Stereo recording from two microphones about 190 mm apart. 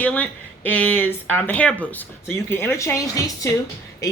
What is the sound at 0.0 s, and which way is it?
Speech, 10° left (ahead or behind).